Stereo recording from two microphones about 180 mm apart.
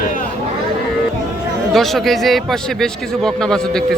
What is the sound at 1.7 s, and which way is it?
A man's voice, centre (ahead or behind).